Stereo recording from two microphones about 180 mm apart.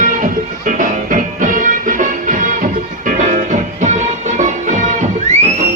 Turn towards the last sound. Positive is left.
turn(degrees=-40)  # may be behind; listen again after turning